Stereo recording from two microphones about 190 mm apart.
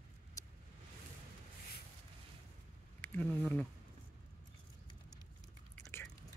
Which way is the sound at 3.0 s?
10° left (ahead or behind).